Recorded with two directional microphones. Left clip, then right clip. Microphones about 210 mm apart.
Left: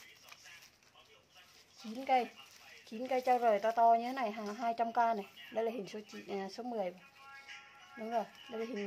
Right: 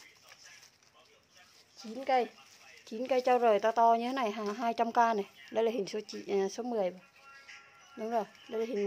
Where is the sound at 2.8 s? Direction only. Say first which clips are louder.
Right 5 dB; 50° right (ahead or behind).